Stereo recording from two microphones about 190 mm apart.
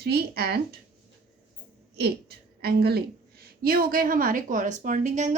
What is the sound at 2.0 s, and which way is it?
A woman's voice, 55° right (ahead or behind).